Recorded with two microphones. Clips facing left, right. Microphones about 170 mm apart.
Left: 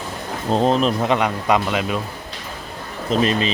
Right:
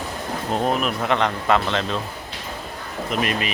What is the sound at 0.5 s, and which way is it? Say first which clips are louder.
Speech: left 5 dB; 30° left (ahead or behind).